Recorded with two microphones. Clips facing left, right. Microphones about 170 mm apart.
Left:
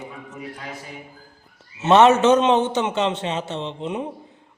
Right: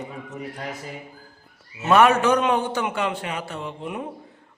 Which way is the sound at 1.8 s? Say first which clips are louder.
Left 3 dB; 25° left (ahead or behind).